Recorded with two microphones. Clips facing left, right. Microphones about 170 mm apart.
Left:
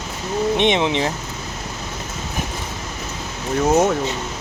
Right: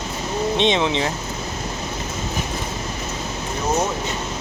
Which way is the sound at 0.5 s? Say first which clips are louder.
Even; 20° left (ahead or behind).